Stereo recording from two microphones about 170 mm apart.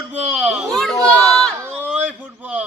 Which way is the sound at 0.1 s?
5° right (ahead or behind).